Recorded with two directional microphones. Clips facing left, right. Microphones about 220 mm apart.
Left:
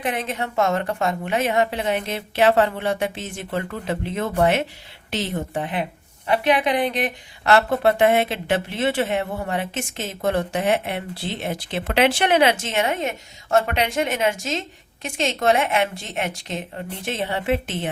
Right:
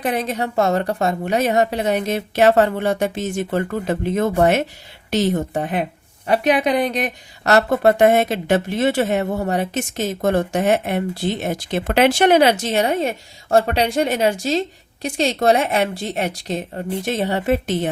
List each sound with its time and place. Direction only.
0.0 s a woman's voice: 35° right (ahead or behind)